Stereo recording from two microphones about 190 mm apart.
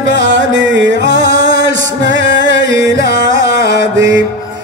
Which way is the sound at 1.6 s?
70° right (ahead or behind).